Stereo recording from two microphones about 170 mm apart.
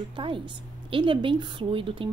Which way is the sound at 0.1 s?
30° right (ahead or behind).